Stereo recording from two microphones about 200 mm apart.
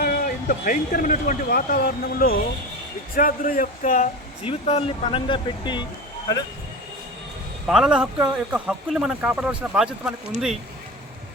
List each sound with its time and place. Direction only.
0.0 s speech: 45° left (ahead or behind)
4.4 s speech: 25° left (ahead or behind)
7.7 s a man's voice: 5° right (ahead or behind)